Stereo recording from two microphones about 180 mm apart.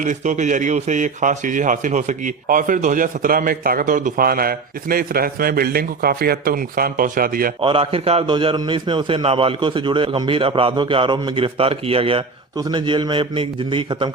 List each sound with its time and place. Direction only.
0.0 s speech: 45° right (ahead or behind)
7.6 s a man's voice: 30° right (ahead or behind)